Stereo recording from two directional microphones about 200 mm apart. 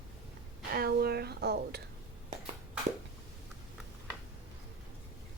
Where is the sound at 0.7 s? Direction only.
50° right (ahead or behind).